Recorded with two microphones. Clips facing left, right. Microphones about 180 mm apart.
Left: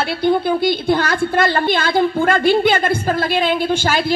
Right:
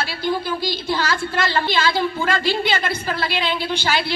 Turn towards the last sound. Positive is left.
turn(degrees=50)  # may be behind; listen again after turning